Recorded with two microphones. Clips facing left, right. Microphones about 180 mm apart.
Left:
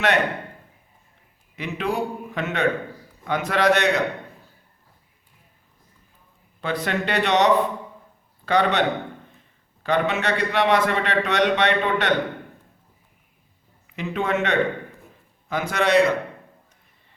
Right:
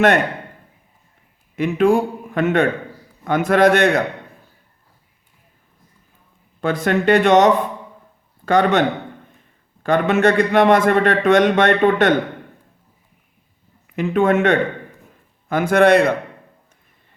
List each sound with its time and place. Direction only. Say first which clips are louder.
1.5 s a man's voice: right 10 dB; 50° right (ahead or behind)
6.6 s a man's voice: right 6 dB; 50° right (ahead or behind)
9.8 s a man's voice: right 7 dB; 50° right (ahead or behind)
13.8 s a man's voice: right 9 dB; 50° right (ahead or behind)